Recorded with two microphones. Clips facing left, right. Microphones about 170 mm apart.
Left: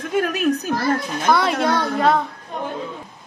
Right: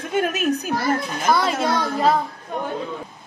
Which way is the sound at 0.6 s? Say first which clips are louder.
Left 1 dB; 5° right (ahead or behind).